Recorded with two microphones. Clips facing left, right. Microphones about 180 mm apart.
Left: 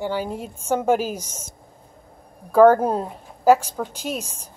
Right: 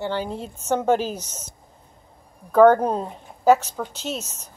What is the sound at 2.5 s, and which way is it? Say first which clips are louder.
Speech: left 1 dB; 5° left (ahead or behind).